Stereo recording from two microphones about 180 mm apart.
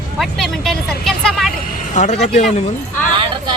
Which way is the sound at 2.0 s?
40° left (ahead or behind).